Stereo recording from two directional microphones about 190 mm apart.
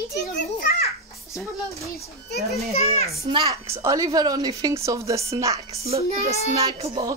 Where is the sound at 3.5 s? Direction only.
15° right (ahead or behind).